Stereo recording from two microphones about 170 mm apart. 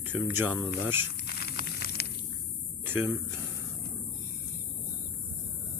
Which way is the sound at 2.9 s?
15° right (ahead or behind).